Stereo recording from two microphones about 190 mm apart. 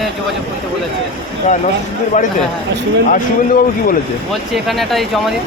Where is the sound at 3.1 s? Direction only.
45° left (ahead or behind).